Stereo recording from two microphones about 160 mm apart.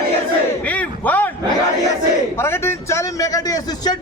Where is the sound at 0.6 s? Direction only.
10° left (ahead or behind).